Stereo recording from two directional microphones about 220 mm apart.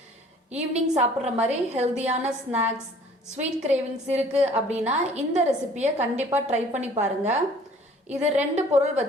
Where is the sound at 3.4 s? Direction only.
30° right (ahead or behind).